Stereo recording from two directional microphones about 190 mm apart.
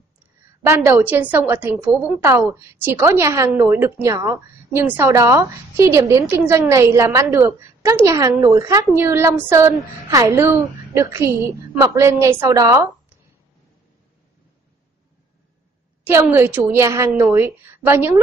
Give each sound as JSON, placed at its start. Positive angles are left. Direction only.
{"t": 0.6, "sound": "a woman's voice", "side_deg": -10}
{"t": 16.0, "sound": "a woman's voice", "side_deg": -10}